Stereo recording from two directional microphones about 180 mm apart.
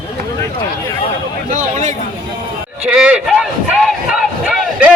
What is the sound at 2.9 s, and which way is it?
Speech, 5° right (ahead or behind).